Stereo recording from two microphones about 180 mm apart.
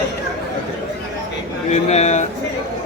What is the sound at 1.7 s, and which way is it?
Speech, 40° left (ahead or behind).